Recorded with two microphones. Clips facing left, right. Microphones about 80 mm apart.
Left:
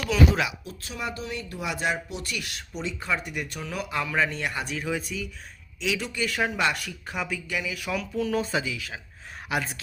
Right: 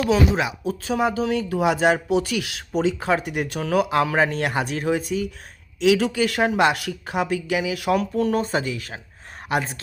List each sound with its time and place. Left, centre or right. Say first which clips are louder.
0.0 s speech: right 4 dB; right
0.9 s speech: right 10 dB; right
4.1 s speech: right 6 dB; right
5.8 s speech: right 10 dB; right
8.4 s speech: right 4 dB; right